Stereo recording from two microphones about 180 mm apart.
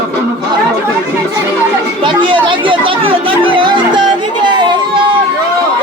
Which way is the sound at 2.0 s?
25° right (ahead or behind).